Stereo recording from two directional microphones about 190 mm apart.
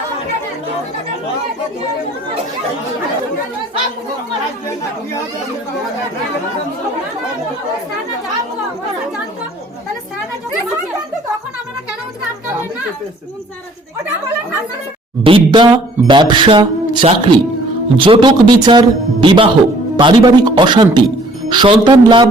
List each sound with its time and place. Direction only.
15.2 s speech: 25° right (ahead or behind)